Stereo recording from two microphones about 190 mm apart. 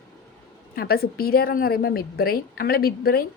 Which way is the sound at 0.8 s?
55° left (ahead or behind).